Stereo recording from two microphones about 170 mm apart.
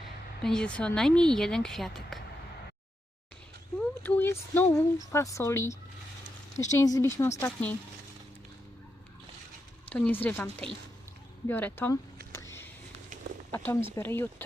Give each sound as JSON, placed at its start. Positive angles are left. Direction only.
{"t": 0.4, "sound": "speech", "side_deg": 5}
{"t": 3.8, "sound": "speech", "side_deg": 10}
{"t": 9.9, "sound": "speech", "side_deg": 10}
{"t": 11.4, "sound": "a sound", "side_deg": 10}
{"t": 13.5, "sound": "speech", "side_deg": 15}